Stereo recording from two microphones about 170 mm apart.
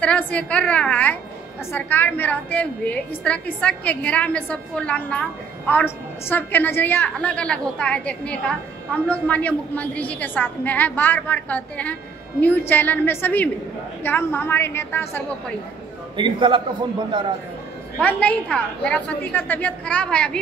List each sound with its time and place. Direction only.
0.0 s a woman's voice: 10° left (ahead or behind)
16.2 s a man's voice: 30° right (ahead or behind)
18.0 s a woman's voice: 10° left (ahead or behind)